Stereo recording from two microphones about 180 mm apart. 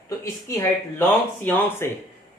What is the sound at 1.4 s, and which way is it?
Speech, 10° left (ahead or behind).